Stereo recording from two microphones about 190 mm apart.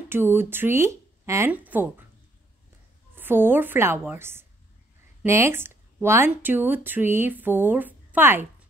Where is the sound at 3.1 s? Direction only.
10° right (ahead or behind).